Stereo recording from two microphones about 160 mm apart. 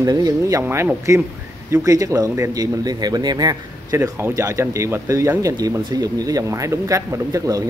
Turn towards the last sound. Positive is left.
turn(degrees=-20)  # may be behind; listen again after turning